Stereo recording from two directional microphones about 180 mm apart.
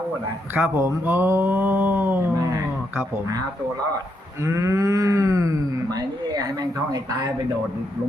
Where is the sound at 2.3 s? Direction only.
20° right (ahead or behind).